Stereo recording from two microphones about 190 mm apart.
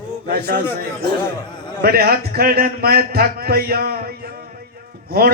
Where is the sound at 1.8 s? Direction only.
55° right (ahead or behind).